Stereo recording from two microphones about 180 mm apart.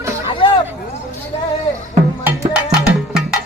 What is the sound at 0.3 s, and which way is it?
Hubbub, 25° left (ahead or behind).